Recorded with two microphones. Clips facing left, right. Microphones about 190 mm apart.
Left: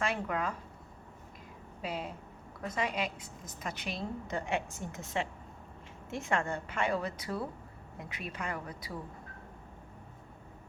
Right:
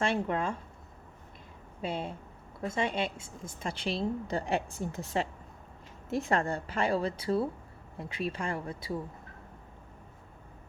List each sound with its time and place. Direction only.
0.0 s speech: 30° right (ahead or behind)
1.8 s a woman's voice: 30° right (ahead or behind)